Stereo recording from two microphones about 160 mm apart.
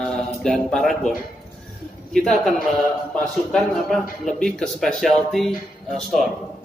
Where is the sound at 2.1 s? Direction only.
Centre (ahead or behind).